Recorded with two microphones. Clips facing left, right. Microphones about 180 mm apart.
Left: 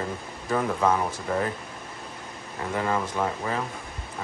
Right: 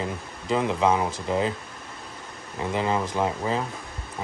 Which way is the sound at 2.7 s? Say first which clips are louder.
Right 1 dB; 20° right (ahead or behind).